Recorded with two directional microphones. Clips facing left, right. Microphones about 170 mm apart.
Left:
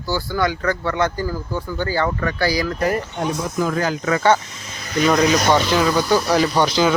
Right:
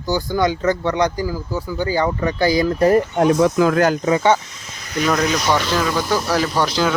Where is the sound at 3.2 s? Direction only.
70° right (ahead or behind).